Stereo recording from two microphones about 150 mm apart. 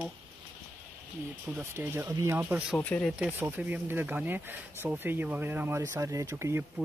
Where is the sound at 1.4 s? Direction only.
15° right (ahead or behind).